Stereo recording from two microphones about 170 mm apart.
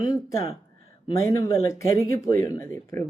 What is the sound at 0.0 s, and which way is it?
Speech, 20° left (ahead or behind).